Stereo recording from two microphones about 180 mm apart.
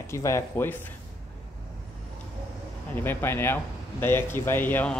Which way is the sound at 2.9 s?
10° left (ahead or behind).